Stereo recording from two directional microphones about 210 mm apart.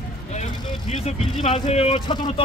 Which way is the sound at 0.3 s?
30° left (ahead or behind).